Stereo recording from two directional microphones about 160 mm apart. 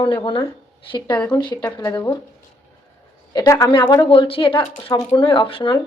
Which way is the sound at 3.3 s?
20° left (ahead or behind).